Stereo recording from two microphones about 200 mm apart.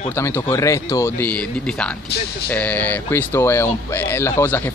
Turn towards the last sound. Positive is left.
turn(degrees=10)  # may be behind; listen again after turning